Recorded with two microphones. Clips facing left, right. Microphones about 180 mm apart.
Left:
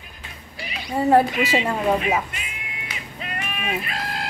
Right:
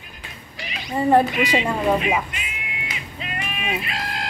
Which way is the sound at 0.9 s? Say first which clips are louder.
Even; 5° left (ahead or behind).